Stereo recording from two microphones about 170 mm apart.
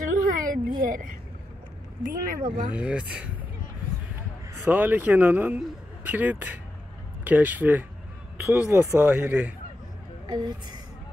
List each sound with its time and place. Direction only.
0.0 s a sound: 50° right (ahead or behind)
2.0 s speech: 55° right (ahead or behind)
2.7 s speech: 5° right (ahead or behind)
4.6 s speech: 10° right (ahead or behind)
10.2 s a woman's voice: 25° right (ahead or behind)